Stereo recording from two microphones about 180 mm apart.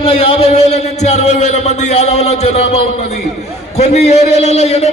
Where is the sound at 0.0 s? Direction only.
30° left (ahead or behind).